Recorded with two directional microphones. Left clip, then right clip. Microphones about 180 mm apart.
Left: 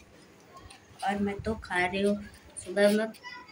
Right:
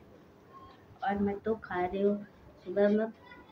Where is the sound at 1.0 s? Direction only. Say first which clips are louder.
Left 1 dB; 5° left (ahead or behind).